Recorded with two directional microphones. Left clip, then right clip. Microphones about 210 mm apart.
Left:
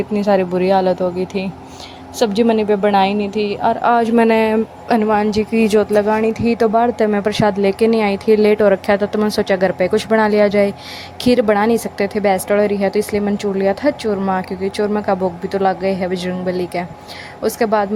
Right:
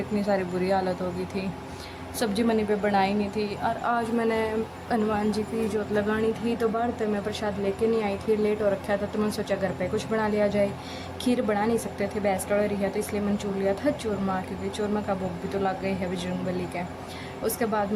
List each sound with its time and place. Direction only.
0.2 s a woman's voice: 35° left (ahead or behind)
17.4 s a woman's voice: 40° left (ahead or behind)